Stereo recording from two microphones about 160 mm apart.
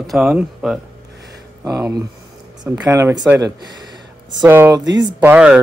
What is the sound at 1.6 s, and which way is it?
Speech, 15° right (ahead or behind).